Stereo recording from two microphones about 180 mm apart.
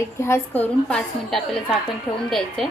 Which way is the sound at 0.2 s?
10° left (ahead or behind).